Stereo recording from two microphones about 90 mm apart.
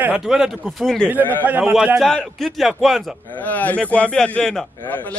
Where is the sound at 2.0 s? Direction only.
5° left (ahead or behind).